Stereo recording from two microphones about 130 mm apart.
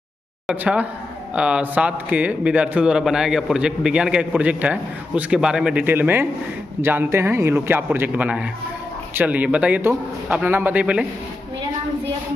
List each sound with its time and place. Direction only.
0.5 s speech: 10° right (ahead or behind)